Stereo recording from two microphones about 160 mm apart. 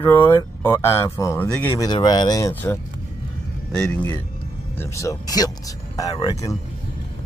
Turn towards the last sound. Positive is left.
turn(degrees=20)  # may be behind; listen again after turning